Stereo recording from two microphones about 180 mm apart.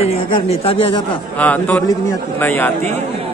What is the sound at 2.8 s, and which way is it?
Speech, 35° right (ahead or behind).